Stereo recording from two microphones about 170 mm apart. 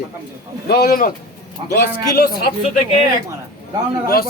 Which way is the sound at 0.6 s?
65° left (ahead or behind).